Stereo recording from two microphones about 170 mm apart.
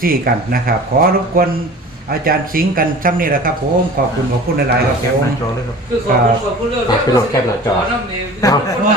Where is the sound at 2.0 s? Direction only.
55° right (ahead or behind).